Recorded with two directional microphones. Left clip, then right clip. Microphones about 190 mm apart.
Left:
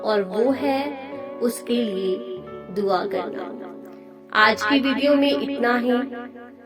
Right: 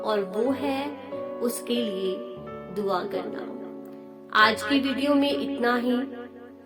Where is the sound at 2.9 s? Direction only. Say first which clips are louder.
Left 5 dB; 25° left (ahead or behind).